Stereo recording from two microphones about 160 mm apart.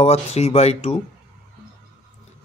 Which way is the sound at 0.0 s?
40° left (ahead or behind).